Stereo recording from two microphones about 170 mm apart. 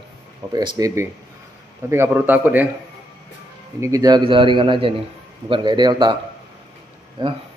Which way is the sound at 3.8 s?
20° right (ahead or behind).